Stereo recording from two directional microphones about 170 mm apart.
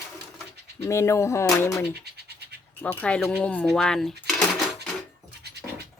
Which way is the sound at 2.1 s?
70° right (ahead or behind).